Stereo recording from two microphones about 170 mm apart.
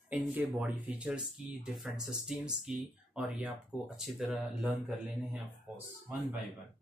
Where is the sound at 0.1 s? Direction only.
10° right (ahead or behind).